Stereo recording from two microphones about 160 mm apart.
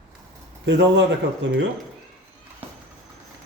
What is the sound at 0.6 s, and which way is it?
Speech, 90° right.